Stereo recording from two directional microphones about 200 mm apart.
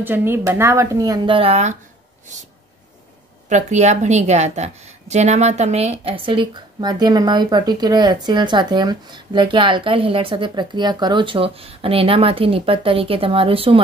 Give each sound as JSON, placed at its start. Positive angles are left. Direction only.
{"t": 0.0, "sound": "speech", "side_deg": -10}
{"t": 3.4, "sound": "a woman's voice", "side_deg": -35}